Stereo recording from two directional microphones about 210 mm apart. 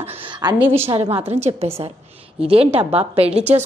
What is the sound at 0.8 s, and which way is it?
Speech, 25° right (ahead or behind).